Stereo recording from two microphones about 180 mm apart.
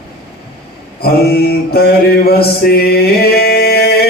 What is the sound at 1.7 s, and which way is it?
Male singing, 60° left (ahead or behind).